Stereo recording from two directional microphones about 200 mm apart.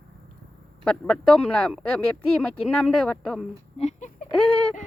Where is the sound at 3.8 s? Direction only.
35° left (ahead or behind).